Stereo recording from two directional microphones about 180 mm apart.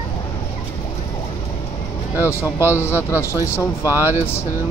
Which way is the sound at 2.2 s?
15° left (ahead or behind).